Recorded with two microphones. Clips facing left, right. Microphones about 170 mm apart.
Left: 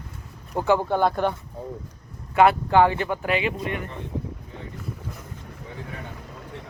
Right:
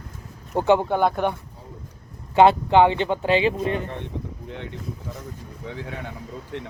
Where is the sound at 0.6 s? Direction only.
20° right (ahead or behind).